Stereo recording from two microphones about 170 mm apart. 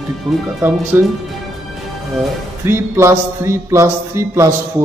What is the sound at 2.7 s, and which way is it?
Speech, 15° right (ahead or behind).